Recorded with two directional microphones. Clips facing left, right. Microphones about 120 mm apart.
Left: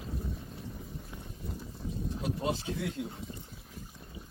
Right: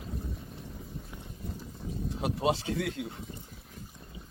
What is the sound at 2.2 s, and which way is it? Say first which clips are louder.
Speech: right 5 dB; 90° right.